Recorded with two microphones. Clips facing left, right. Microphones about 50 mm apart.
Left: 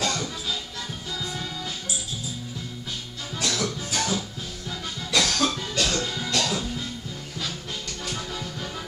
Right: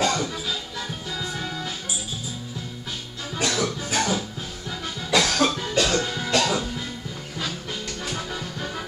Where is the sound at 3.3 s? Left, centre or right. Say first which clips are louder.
Right 3 dB; centre.